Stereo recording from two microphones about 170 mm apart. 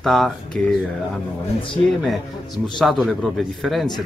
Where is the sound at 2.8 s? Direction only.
Centre (ahead or behind).